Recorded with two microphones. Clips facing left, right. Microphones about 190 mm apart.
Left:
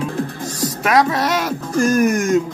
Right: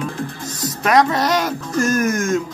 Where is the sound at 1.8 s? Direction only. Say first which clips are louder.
Left 3 dB; 15° left (ahead or behind).